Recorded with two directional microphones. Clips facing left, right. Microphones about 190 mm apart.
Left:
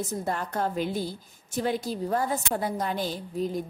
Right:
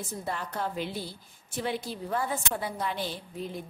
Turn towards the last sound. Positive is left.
turn(degrees=40)  # may be behind; listen again after turning